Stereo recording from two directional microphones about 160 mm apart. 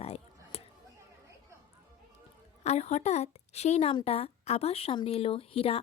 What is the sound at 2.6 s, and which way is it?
A woman's voice, 45° left (ahead or behind).